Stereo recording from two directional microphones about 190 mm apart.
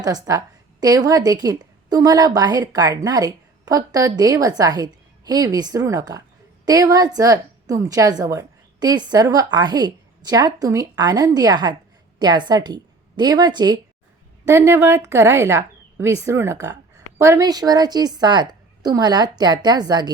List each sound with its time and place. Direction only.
0.0 s a woman's voice: 20° right (ahead or behind)